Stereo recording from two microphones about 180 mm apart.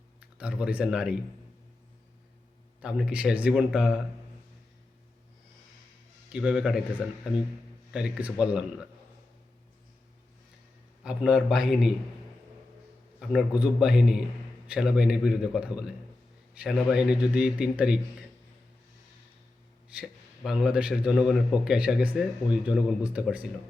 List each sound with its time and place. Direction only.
0.2 s speech: 5° right (ahead or behind)
2.8 s speech: 5° right (ahead or behind)
6.3 s speech: 5° right (ahead or behind)
7.9 s speech: 5° right (ahead or behind)
11.0 s speech: 5° right (ahead or behind)
13.1 s speech: 5° right (ahead or behind)
20.0 s speech: 5° right (ahead or behind)